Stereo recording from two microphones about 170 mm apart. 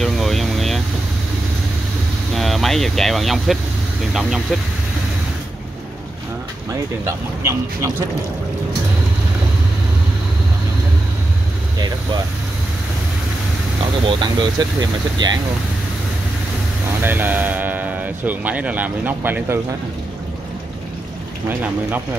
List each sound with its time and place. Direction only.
0.0 s vehicle: centre (ahead or behind)
2.3 s speech: centre (ahead or behind)
7.1 s speech: 15° right (ahead or behind)
14.0 s speech: 25° right (ahead or behind)
17.0 s speech: 10° right (ahead or behind)